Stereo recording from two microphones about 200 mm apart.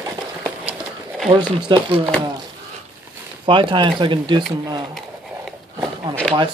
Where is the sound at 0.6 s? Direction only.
5° right (ahead or behind).